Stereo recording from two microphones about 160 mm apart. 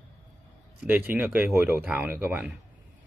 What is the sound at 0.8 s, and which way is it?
Speech, 10° right (ahead or behind).